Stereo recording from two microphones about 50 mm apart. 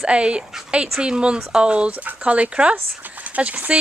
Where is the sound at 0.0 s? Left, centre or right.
Right.